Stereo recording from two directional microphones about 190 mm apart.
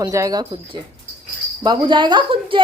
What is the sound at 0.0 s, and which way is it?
Speech, 15° right (ahead or behind).